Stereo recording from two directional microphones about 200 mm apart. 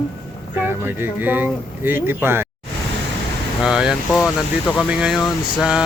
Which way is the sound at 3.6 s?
5° right (ahead or behind).